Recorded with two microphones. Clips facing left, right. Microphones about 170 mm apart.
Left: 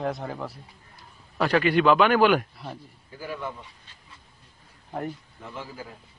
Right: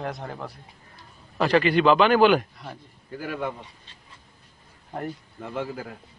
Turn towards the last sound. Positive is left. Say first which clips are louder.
# right 7 dB
turn(degrees=-60)  # may be behind; listen again after turning